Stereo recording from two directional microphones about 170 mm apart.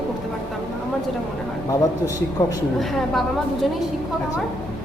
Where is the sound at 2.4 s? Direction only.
20° left (ahead or behind).